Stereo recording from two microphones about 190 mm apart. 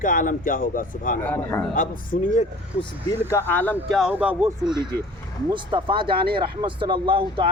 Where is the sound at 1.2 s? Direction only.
10° left (ahead or behind).